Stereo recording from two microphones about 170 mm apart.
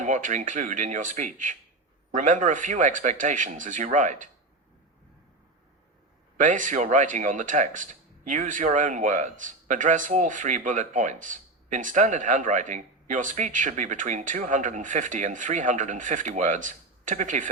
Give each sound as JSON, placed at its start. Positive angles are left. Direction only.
{"t": 0.0, "sound": "speech", "side_deg": -45}
{"t": 6.3, "sound": "speech", "side_deg": -50}